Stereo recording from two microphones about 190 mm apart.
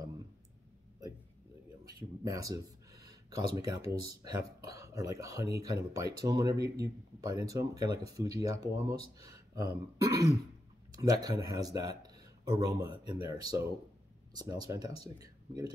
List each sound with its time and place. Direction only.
1.9 s speech: 20° right (ahead or behind)